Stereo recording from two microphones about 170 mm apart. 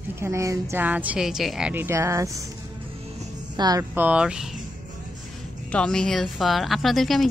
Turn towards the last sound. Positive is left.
turn(degrees=0)  # may be behind; listen again after turning